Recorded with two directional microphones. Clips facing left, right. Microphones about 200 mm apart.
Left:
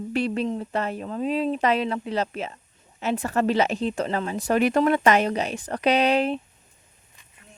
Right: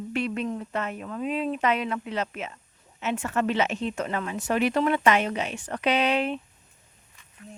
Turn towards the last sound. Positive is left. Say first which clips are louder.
# left 3 dB
turn(degrees=35)  # may be behind; listen again after turning